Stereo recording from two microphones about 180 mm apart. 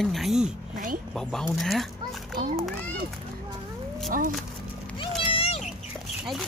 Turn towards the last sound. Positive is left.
turn(degrees=30)  # may be behind; listen again after turning